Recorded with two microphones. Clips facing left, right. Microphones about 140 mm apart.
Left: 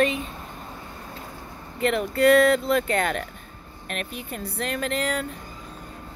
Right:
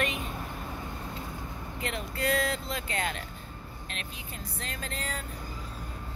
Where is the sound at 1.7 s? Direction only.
65° left (ahead or behind).